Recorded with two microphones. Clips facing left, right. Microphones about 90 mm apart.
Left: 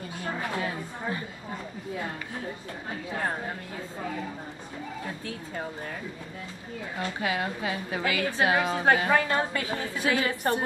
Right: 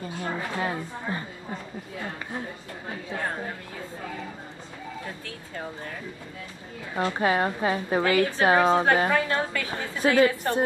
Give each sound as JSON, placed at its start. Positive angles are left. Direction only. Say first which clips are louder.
{"t": 0.2, "sound": "a woman's voice", "louder": "right 1 dB", "side_deg": -30}
{"t": 7.2, "sound": "a woman's voice", "louder": "right 6 dB", "side_deg": -35}
{"t": 9.1, "sound": "a woman's voice", "louder": "even", "side_deg": 25}
{"t": 9.8, "sound": "a woman's voice", "louder": "right 7 dB", "side_deg": -35}
{"t": 10.4, "sound": "a woman's voice", "louder": "right 1 dB", "side_deg": 35}